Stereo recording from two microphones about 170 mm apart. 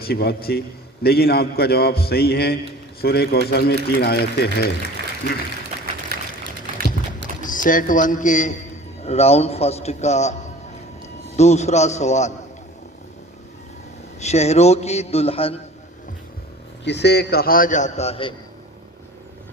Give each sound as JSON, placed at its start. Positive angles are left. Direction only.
{"t": 0.0, "sound": "a man's voice", "side_deg": 65}
{"t": 6.1, "sound": "a sound", "side_deg": -65}
{"t": 7.4, "sound": "a man's voice", "side_deg": 50}
{"t": 11.3, "sound": "a man's voice", "side_deg": 40}
{"t": 14.2, "sound": "a man's voice", "side_deg": 40}
{"t": 16.8, "sound": "a man's voice", "side_deg": 85}